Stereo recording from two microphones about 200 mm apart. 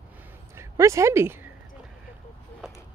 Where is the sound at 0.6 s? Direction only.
15° right (ahead or behind).